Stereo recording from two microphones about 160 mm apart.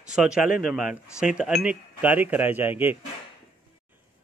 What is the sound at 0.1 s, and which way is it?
A man's voice, 5° right (ahead or behind).